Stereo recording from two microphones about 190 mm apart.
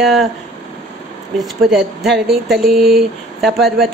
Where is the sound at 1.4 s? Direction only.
Centre (ahead or behind).